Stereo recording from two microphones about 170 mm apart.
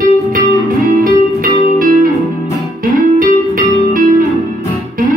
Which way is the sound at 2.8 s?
55° right (ahead or behind).